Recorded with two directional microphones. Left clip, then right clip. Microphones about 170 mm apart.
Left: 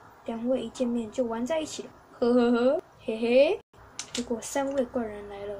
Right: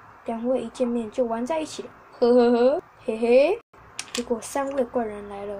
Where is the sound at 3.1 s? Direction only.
35° right (ahead or behind).